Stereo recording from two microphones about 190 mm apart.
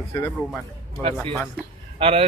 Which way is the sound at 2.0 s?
30° right (ahead or behind).